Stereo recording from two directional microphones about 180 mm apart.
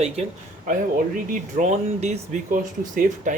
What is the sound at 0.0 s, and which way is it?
Speech, 40° right (ahead or behind).